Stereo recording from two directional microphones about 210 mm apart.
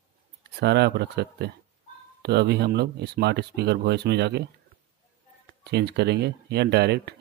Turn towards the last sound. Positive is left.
turn(degrees=-50)  # may be behind; listen again after turning